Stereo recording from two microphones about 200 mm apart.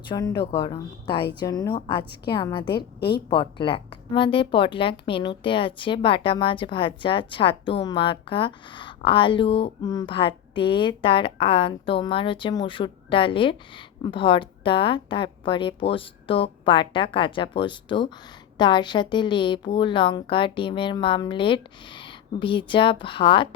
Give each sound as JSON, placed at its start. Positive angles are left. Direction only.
{"t": 0.1, "sound": "speech", "side_deg": 20}